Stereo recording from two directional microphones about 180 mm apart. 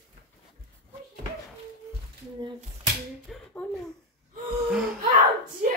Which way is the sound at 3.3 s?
Centre (ahead or behind).